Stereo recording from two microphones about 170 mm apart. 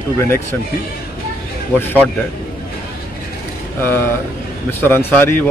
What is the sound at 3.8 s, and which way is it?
Speech, 15° left (ahead or behind).